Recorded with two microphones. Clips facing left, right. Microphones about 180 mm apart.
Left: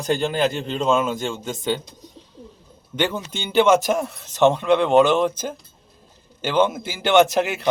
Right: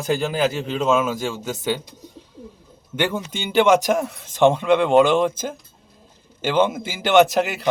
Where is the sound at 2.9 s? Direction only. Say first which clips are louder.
Even; 10° right (ahead or behind).